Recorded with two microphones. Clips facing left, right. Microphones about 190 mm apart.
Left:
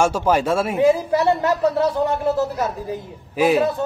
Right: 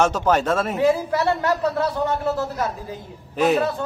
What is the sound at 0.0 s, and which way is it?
A woman's voice, 10° left (ahead or behind).